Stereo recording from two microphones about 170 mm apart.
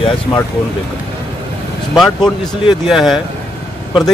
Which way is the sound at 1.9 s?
Centre (ahead or behind).